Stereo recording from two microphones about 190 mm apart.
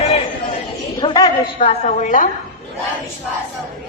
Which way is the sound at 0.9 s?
20° left (ahead or behind).